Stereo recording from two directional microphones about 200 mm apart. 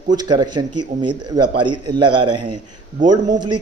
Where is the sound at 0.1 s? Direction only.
20° right (ahead or behind).